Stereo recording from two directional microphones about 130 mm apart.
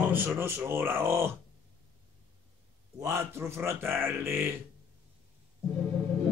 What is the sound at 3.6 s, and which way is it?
Speech, 20° right (ahead or behind).